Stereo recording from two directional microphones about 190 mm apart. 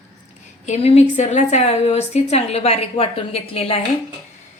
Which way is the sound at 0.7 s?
35° left (ahead or behind).